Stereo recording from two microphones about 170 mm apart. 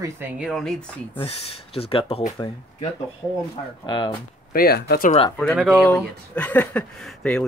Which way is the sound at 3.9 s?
25° left (ahead or behind).